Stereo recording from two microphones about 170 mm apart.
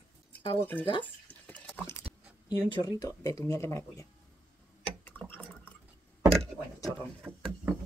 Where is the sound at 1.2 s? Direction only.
10° left (ahead or behind).